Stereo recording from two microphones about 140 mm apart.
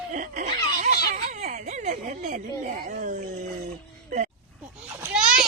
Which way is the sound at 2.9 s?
75° right (ahead or behind).